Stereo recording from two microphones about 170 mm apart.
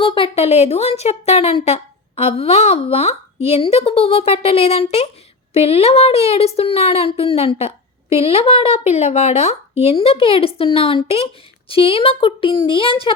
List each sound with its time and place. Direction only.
0.0 s a woman's voice: 30° left (ahead or behind)